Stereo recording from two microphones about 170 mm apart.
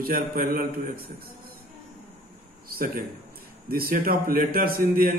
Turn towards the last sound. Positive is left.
turn(degrees=-55)  # may be behind; listen again after turning